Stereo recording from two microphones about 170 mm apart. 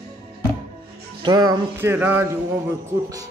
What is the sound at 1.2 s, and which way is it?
Speech, 25° right (ahead or behind).